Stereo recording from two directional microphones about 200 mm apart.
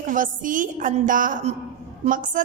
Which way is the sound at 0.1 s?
40° right (ahead or behind).